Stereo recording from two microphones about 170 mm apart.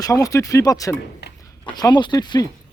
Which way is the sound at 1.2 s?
75° left (ahead or behind).